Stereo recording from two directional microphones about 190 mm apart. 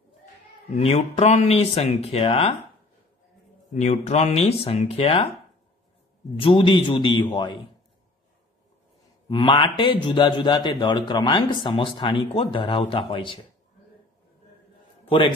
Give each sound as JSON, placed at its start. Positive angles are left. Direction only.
{"t": 0.7, "sound": "speech", "side_deg": 35}
{"t": 3.7, "sound": "speech", "side_deg": 35}
{"t": 6.4, "sound": "a man's voice", "side_deg": 25}
{"t": 9.3, "sound": "a man's voice", "side_deg": 25}
{"t": 15.0, "sound": "a man's voice", "side_deg": 25}